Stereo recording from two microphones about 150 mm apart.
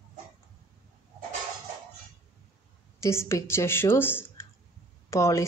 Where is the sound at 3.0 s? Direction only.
20° left (ahead or behind).